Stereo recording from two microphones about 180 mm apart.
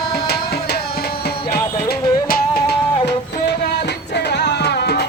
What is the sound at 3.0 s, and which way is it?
Music, 65° left (ahead or behind).